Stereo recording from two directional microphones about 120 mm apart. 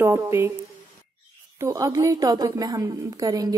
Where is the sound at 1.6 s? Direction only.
25° right (ahead or behind).